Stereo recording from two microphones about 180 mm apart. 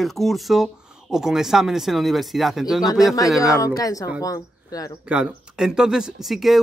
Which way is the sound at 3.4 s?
20° left (ahead or behind).